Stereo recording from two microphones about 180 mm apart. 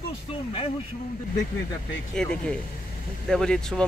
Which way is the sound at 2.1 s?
5° left (ahead or behind).